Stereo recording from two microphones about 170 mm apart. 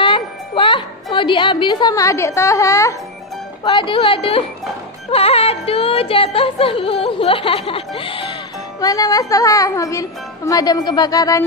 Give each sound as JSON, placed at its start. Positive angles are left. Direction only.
{"t": 0.0, "sound": "music", "side_deg": 30}
{"t": 1.1, "sound": "a woman's voice", "side_deg": 30}
{"t": 3.6, "sound": "music", "side_deg": 30}
{"t": 8.8, "sound": "a woman's voice", "side_deg": 20}